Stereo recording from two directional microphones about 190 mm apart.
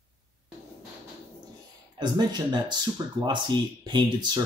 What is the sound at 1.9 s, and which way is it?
Speech, 25° right (ahead or behind).